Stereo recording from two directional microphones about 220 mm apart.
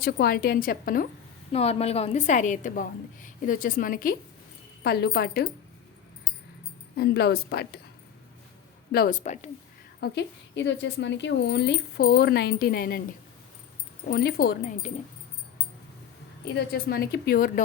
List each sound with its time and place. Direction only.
0.0 s a woman's voice: 45° left (ahead or behind)
1.5 s a woman's voice: 30° left (ahead or behind); by 5.5 s 45° left (ahead or behind)
6.9 s speech: 45° left (ahead or behind)
8.9 s a woman's voice: 40° left (ahead or behind)
10.0 s speech: 50° left (ahead or behind)
14.1 s speech: 45° left (ahead or behind)
16.6 s speech: 45° left (ahead or behind)